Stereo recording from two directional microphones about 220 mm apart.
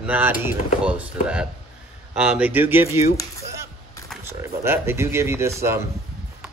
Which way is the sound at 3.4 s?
15° right (ahead or behind).